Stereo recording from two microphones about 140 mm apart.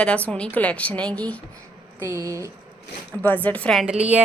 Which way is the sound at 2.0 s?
25° right (ahead or behind).